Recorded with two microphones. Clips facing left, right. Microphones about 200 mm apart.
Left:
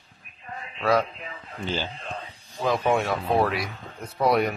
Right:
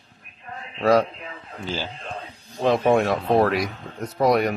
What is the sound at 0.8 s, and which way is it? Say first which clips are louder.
Speech: right 5 dB; 40° right (ahead or behind).